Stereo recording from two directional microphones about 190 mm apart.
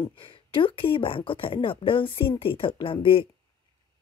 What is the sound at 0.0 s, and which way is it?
Speech, 25° left (ahead or behind).